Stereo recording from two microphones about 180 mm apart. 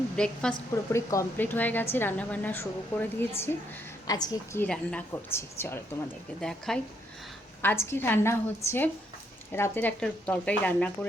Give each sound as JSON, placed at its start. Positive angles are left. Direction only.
{"t": 0.2, "sound": "a woman's voice", "side_deg": 5}
{"t": 0.9, "sound": "a woman's voice", "side_deg": 15}
{"t": 4.6, "sound": "a woman's voice", "side_deg": 5}
{"t": 7.6, "sound": "a woman's voice", "side_deg": 15}